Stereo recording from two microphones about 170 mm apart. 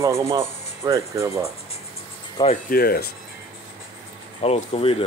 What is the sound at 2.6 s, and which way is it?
Speech, 65° left (ahead or behind).